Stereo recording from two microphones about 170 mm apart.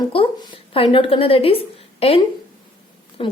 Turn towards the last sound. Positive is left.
turn(degrees=30)  # may be behind; listen again after turning